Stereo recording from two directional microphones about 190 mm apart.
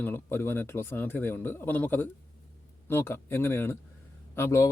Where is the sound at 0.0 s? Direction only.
10° left (ahead or behind).